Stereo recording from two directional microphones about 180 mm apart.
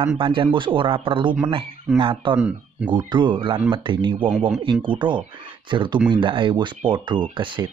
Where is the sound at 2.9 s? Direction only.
25° right (ahead or behind).